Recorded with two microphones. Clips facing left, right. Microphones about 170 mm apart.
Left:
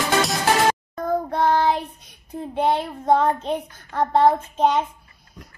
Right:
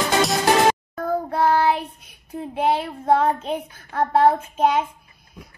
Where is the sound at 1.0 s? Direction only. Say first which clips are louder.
Even; 5° right (ahead or behind).